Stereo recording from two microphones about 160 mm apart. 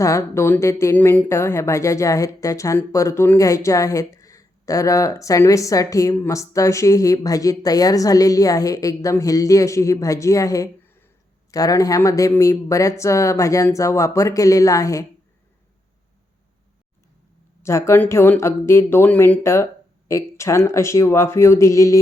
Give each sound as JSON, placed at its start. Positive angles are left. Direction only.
{"t": 0.0, "sound": "speech", "side_deg": 20}
{"t": 17.6, "sound": "speech", "side_deg": 15}